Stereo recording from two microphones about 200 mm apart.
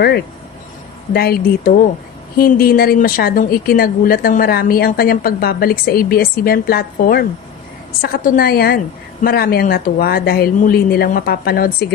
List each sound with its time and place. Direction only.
1.1 s speech: 50° left (ahead or behind)